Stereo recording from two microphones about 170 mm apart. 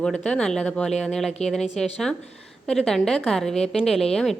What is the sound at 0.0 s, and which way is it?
Speech, 5° left (ahead or behind).